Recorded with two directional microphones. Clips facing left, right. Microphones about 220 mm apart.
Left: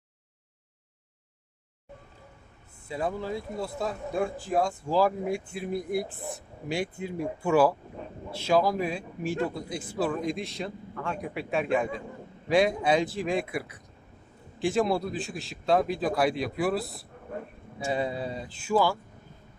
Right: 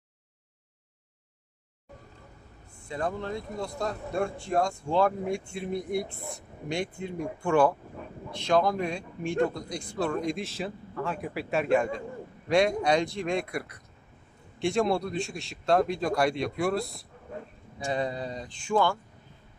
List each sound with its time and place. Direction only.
2.9 s a man's voice: 5° left (ahead or behind)
17.3 s a sound: 55° left (ahead or behind)
17.7 s speech: 5° left (ahead or behind)